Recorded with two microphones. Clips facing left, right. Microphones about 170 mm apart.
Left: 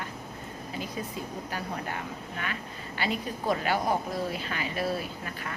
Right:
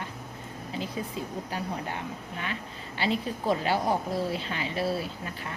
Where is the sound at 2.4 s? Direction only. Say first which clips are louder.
Right 1 dB; 25° right (ahead or behind).